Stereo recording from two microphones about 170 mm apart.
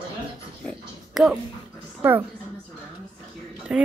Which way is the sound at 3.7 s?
5° right (ahead or behind).